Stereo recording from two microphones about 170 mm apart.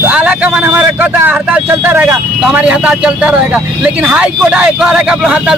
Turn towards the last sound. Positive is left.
turn(degrees=-5)  # may be behind; listen again after turning